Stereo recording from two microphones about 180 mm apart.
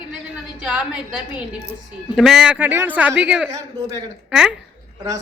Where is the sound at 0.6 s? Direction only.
5° right (ahead or behind).